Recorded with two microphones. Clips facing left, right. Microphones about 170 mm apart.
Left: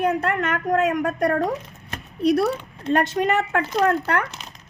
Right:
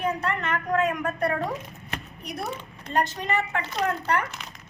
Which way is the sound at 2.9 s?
65° left (ahead or behind).